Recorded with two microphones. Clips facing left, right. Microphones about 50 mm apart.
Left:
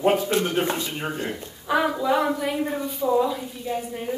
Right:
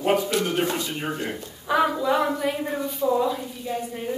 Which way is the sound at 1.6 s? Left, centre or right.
Centre.